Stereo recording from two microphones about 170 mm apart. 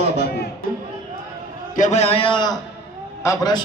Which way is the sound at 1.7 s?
45° left (ahead or behind).